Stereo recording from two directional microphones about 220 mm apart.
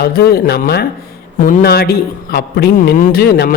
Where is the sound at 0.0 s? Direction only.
45° left (ahead or behind).